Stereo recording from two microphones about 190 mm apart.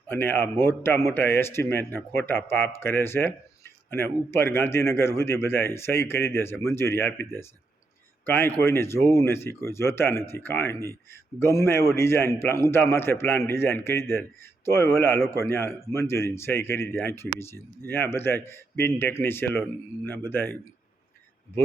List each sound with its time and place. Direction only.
0.1 s a man's voice: 10° left (ahead or behind)